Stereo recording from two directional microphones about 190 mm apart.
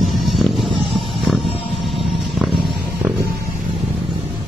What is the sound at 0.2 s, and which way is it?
Music, centre (ahead or behind).